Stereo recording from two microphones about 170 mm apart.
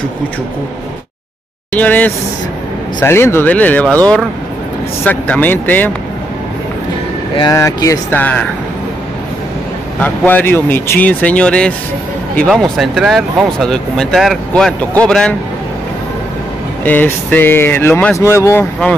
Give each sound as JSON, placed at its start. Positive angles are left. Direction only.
{"t": 1.7, "sound": "speech", "side_deg": 10}
{"t": 5.0, "sound": "speech", "side_deg": 10}
{"t": 7.3, "sound": "speech", "side_deg": 20}
{"t": 9.9, "sound": "speech", "side_deg": 10}
{"t": 16.8, "sound": "speech", "side_deg": 10}